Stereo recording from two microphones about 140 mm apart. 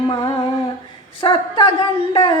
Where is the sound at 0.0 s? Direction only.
30° left (ahead or behind).